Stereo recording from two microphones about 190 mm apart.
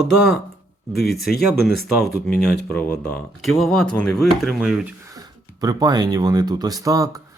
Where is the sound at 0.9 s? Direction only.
55° left (ahead or behind).